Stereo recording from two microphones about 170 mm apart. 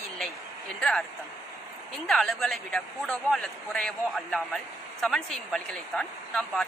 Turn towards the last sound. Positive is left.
turn(degrees=5)  # may be behind; listen again after turning